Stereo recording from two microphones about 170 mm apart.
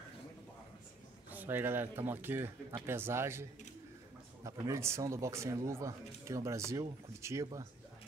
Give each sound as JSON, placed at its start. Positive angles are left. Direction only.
{"t": 1.3, "sound": "speech", "side_deg": -10}